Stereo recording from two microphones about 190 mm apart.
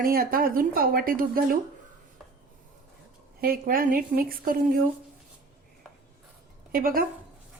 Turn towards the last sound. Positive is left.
turn(degrees=-50)  # may be behind; listen again after turning